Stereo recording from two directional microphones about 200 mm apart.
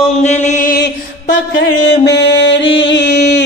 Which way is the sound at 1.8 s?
60° left (ahead or behind).